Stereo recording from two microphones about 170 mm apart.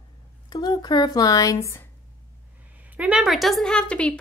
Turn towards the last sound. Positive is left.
turn(degrees=5)  # may be behind; listen again after turning